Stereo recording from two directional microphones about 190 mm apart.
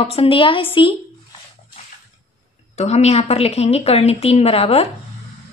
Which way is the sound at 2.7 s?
35° left (ahead or behind).